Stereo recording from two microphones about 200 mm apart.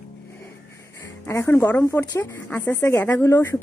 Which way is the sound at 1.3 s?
10° left (ahead or behind).